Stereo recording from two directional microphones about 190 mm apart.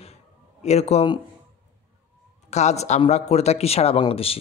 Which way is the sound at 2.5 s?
35° left (ahead or behind).